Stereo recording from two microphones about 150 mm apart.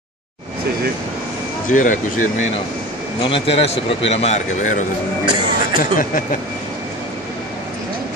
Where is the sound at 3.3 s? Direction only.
40° left (ahead or behind); by 6.2 s 60° left (ahead or behind).